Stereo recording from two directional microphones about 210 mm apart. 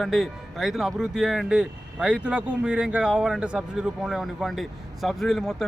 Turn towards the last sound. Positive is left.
turn(degrees=0)  # may be behind; listen again after turning